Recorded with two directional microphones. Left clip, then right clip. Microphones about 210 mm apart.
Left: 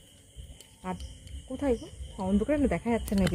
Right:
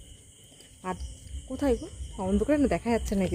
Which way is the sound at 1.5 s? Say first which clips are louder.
Right 2 dB; 5° right (ahead or behind).